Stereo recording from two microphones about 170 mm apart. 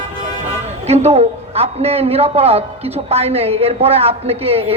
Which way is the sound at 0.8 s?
40° right (ahead or behind).